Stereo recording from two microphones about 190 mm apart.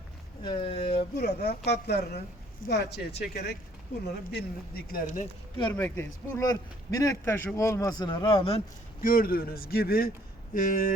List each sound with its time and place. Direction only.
0.4 s speech: 25° left (ahead or behind)
1.2 s a man's voice: 60° left (ahead or behind); by 5.3 s 40° left (ahead or behind)
5.6 s speech: 10° left (ahead or behind); by 8.6 s 30° left (ahead or behind)
9.0 s a man's voice: 50° left (ahead or behind)